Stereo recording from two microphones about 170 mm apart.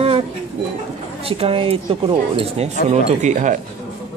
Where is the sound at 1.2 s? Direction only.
35° right (ahead or behind).